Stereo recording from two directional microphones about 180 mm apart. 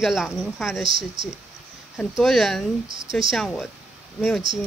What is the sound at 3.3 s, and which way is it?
Speech, centre (ahead or behind).